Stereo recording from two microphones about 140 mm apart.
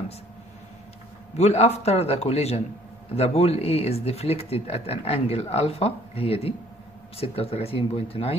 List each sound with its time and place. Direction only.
1.3 s speech: 50° left (ahead or behind)